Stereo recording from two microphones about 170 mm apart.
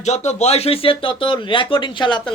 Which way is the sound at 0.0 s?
40° left (ahead or behind).